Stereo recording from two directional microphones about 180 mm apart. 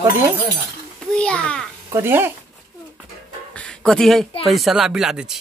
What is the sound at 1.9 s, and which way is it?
Speech, 10° right (ahead or behind).